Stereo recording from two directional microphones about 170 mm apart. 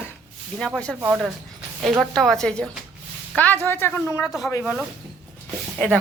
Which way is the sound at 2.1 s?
Centre (ahead or behind).